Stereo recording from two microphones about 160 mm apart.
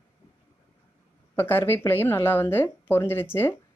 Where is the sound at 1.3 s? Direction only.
15° left (ahead or behind).